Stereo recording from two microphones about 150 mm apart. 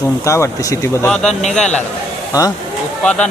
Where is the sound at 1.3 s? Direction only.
50° left (ahead or behind).